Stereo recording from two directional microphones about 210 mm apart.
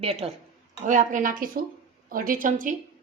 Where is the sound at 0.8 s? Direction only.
35° right (ahead or behind).